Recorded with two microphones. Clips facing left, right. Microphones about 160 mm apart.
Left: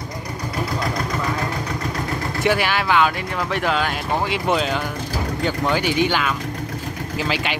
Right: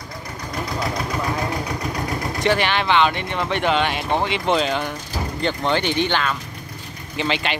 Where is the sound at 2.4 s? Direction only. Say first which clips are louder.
Even; 5° left (ahead or behind).